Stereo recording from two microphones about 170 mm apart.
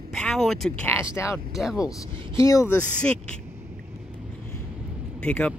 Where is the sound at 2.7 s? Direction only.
5° left (ahead or behind).